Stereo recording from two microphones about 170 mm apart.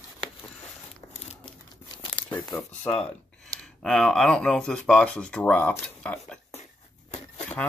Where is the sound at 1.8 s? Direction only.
25° left (ahead or behind).